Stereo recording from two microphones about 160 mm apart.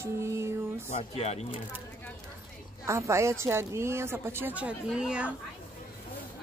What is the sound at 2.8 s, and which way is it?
Speech, 15° right (ahead or behind).